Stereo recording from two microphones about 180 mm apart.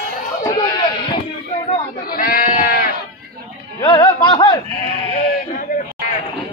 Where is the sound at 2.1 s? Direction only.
55° left (ahead or behind).